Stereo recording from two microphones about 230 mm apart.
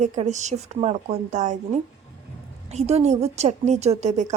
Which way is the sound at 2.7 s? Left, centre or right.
Right.